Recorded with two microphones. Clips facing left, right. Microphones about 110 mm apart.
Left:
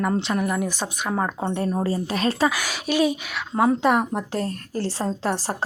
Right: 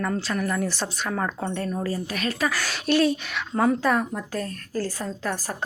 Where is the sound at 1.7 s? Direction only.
30° left (ahead or behind).